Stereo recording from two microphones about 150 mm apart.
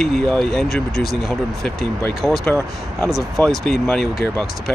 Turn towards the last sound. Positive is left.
turn(degrees=0)  # may be behind; listen again after turning